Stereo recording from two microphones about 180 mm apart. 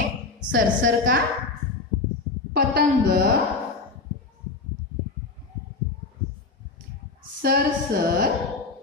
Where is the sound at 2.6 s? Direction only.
65° right (ahead or behind).